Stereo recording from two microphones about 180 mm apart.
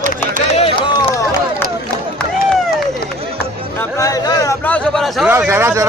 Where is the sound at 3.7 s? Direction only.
20° left (ahead or behind); by 5.2 s centre (ahead or behind).